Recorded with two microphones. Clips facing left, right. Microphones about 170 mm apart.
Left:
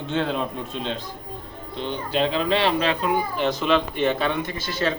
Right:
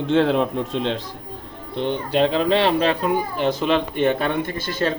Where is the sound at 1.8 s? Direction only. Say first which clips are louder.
Right 4 dB; 55° right (ahead or behind).